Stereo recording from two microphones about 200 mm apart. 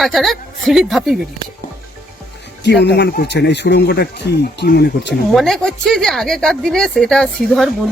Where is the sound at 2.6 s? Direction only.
55° left (ahead or behind).